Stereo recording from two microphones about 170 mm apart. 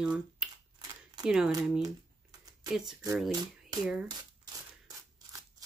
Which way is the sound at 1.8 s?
20° right (ahead or behind).